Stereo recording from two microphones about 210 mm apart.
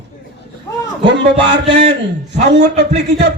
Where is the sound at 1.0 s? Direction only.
55° right (ahead or behind).